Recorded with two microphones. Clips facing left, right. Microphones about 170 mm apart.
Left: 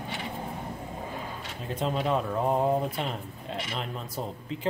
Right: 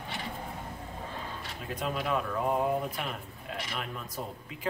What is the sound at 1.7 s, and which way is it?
A man's voice, 25° left (ahead or behind).